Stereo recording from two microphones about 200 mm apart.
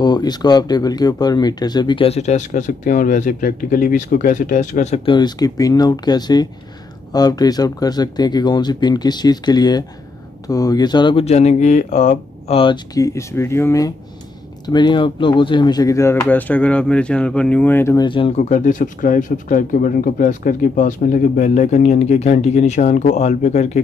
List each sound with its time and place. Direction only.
0.0 s speech: 20° left (ahead or behind)